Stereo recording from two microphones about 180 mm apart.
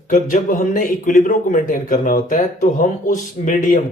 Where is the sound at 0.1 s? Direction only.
45° left (ahead or behind).